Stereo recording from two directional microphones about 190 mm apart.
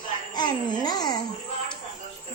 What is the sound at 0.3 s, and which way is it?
Babbling, 20° left (ahead or behind).